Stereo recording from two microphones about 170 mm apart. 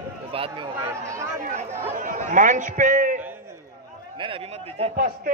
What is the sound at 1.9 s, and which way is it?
A man's voice, 50° right (ahead or behind).